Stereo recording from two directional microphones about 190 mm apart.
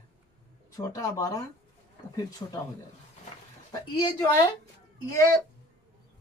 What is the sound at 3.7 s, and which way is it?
Speech, 25° left (ahead or behind).